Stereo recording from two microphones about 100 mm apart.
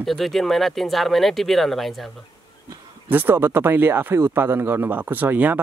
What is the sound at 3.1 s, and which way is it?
Speech, 20° right (ahead or behind).